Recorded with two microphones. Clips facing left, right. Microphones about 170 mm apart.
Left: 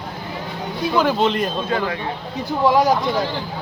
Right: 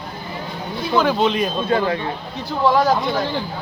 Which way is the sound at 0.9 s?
Centre (ahead or behind).